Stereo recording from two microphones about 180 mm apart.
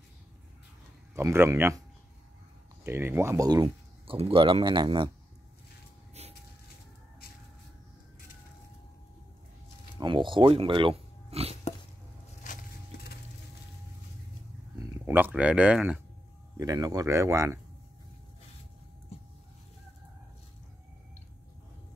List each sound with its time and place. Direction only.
1.1 s speech: 15° right (ahead or behind)
2.8 s speech: 15° right (ahead or behind)
9.9 s speech: 25° right (ahead or behind)
14.8 s a sound: 15° right (ahead or behind)
16.5 s speech: 20° right (ahead or behind)